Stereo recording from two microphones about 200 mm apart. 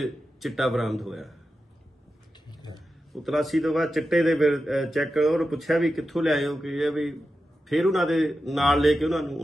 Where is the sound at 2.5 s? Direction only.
20° left (ahead or behind).